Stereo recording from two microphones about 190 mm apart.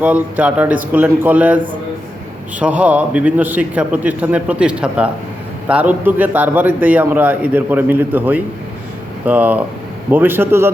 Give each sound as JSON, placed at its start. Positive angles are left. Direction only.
{"t": 0.0, "sound": "a man's voice", "side_deg": -5}